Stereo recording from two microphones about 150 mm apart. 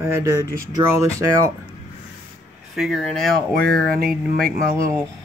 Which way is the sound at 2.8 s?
5° right (ahead or behind).